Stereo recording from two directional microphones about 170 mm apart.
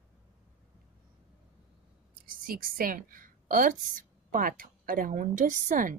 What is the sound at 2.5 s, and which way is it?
A woman's voice, 55° right (ahead or behind).